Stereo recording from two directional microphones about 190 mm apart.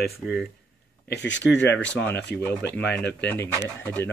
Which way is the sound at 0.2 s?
5° right (ahead or behind).